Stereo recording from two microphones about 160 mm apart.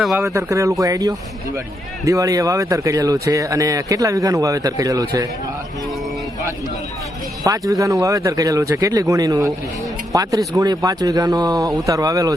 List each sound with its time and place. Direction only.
0.2 s speech: 20° right (ahead or behind)
7.4 s speech: 20° right (ahead or behind)